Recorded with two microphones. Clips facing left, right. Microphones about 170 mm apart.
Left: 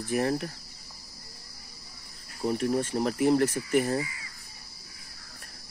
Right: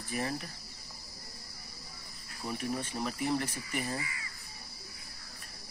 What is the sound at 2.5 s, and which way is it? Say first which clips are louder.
Speech: left 8 dB; 50° left (ahead or behind).